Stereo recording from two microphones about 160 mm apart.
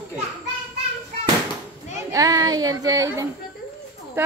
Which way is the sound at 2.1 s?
20° right (ahead or behind).